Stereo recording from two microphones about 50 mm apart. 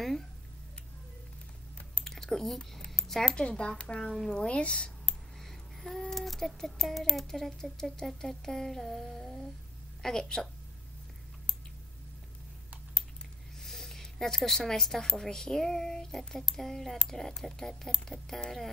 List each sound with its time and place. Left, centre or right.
2.0 s computer keyboard: centre
2.9 s a sound: centre
3.4 s speech: centre
5.4 s speech: centre
13.6 s a woman's voice: centre